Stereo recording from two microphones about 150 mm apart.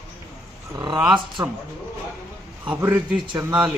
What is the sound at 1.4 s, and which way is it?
Speech, 15° right (ahead or behind).